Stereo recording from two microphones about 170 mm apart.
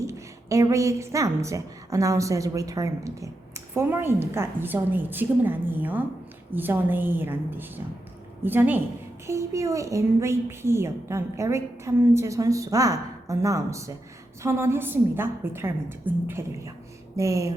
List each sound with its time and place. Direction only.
0.0 s a woman's voice: 15° right (ahead or behind)